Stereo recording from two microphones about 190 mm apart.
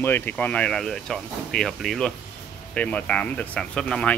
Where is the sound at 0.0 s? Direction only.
10° left (ahead or behind).